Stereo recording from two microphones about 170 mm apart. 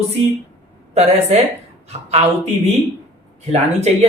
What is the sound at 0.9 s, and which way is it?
Speech, 40° right (ahead or behind).